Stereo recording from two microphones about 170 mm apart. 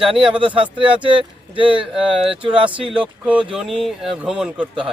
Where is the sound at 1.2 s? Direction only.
30° right (ahead or behind).